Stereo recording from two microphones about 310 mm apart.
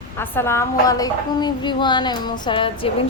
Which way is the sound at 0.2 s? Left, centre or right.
Centre.